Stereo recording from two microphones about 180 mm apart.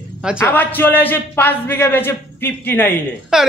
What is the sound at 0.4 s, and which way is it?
A man's voice, 10° left (ahead or behind).